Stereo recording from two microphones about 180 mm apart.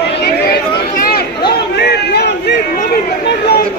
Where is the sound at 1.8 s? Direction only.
65° left (ahead or behind).